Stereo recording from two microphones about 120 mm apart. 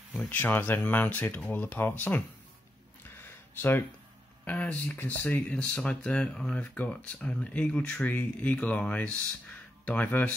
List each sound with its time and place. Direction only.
0.2 s speech: 15° left (ahead or behind)
3.2 s a sound: 15° left (ahead or behind)
4.5 s speech: 10° left (ahead or behind)